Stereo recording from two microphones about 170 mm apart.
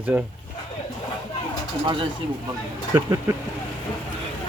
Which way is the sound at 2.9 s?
15° right (ahead or behind).